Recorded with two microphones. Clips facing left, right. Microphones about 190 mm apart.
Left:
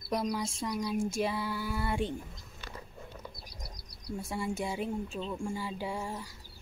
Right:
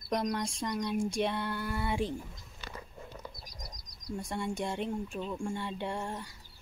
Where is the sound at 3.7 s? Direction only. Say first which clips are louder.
Left 2 dB; 30° left (ahead or behind).